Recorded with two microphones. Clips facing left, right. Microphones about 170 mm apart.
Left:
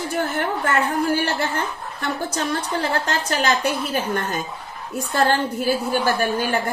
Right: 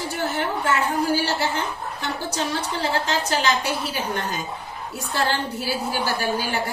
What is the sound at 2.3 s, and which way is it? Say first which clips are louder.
A woman's voice: left 2 dB; 55° left (ahead or behind).